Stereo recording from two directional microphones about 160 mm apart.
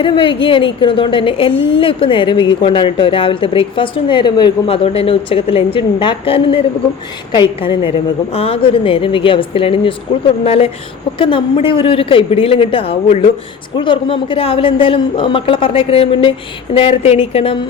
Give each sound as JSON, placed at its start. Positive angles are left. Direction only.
{"t": 0.0, "sound": "a woman's voice", "side_deg": 30}